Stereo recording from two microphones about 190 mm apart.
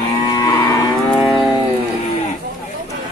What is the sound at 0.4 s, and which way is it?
Livestock, 20° left (ahead or behind).